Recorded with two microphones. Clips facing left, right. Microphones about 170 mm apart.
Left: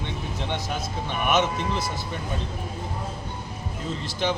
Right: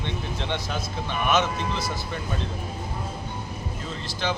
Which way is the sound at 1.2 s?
20° left (ahead or behind).